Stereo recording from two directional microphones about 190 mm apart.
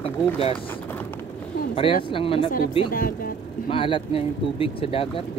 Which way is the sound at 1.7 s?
30° left (ahead or behind).